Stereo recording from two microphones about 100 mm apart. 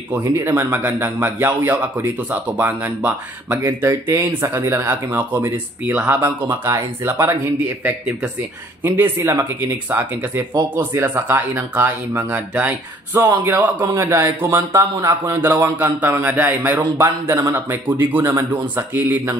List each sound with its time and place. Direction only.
0.2 s speech: 30° right (ahead or behind)
3.5 s speech: 30° right (ahead or behind)
8.8 s speech: 20° right (ahead or behind)